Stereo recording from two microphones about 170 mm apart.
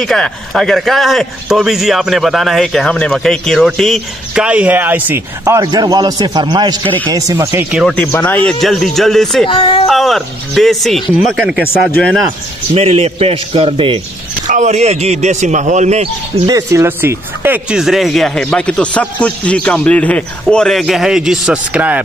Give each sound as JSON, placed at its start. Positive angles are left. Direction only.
{"t": 0.0, "sound": "a man's voice", "side_deg": 5}
{"t": 7.9, "sound": "a man's voice", "side_deg": 10}
{"t": 9.5, "sound": "speech", "side_deg": 30}
{"t": 9.8, "sound": "a man's voice", "side_deg": 0}
{"t": 11.6, "sound": "speech", "side_deg": 10}
{"t": 12.7, "sound": "a man's voice", "side_deg": -35}
{"t": 14.5, "sound": "speech", "side_deg": -45}
{"t": 16.4, "sound": "a man's voice", "side_deg": -20}